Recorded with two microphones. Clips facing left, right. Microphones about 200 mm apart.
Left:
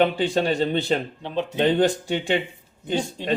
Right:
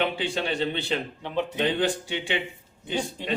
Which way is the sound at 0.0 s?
45° left (ahead or behind).